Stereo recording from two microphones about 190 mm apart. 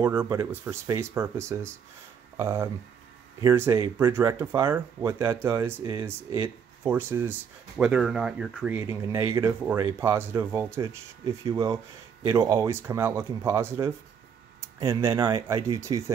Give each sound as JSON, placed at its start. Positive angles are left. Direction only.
{"t": 0.0, "sound": "speech", "side_deg": -10}
{"t": 8.7, "sound": "speech", "side_deg": -15}